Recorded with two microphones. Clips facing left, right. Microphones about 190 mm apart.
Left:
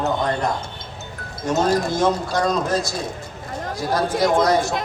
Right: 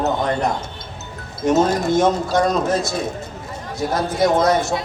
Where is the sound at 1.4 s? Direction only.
20° right (ahead or behind).